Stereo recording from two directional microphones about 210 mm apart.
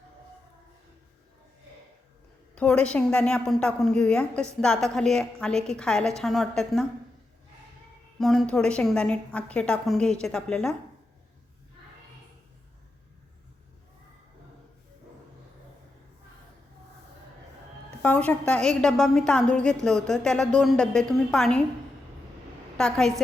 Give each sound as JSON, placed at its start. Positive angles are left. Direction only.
{"t": 2.6, "sound": "a woman's voice", "side_deg": 5}
{"t": 8.2, "sound": "a woman's voice", "side_deg": 0}
{"t": 18.0, "sound": "a woman's voice", "side_deg": 5}
{"t": 22.8, "sound": "a woman's voice", "side_deg": 5}